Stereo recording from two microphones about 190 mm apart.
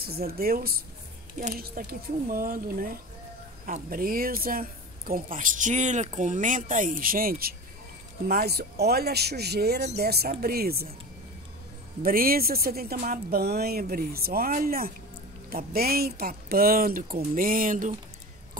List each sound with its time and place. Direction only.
0.0 s speech: 55° right (ahead or behind)
12.0 s speech: 50° right (ahead or behind)